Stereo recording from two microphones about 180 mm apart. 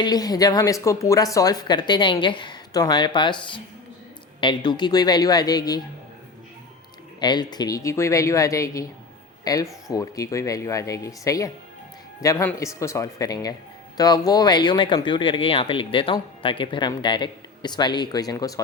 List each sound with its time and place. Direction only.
0.0 s speech: 20° left (ahead or behind)
7.2 s speech: 25° left (ahead or behind)